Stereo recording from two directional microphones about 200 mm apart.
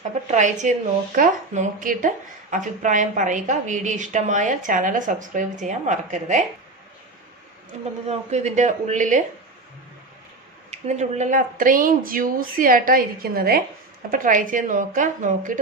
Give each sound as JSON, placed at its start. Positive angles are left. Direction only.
{"t": 0.3, "sound": "a woman's voice", "side_deg": -35}
{"t": 8.0, "sound": "a woman's voice", "side_deg": -35}
{"t": 10.7, "sound": "a woman's voice", "side_deg": -35}